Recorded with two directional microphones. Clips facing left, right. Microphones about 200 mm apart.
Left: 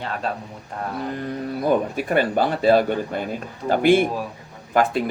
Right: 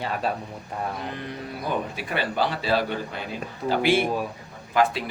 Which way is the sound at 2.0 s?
50° left (ahead or behind).